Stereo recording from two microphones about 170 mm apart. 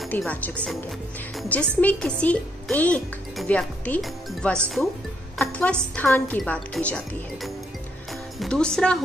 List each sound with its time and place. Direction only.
0.0 s chopping: 5° left (ahead or behind)
1.3 s a woman's voice: 5° left (ahead or behind)
8.1 s music: centre (ahead or behind)